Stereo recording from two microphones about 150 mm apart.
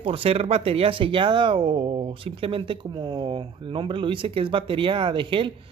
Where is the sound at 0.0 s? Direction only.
40° right (ahead or behind).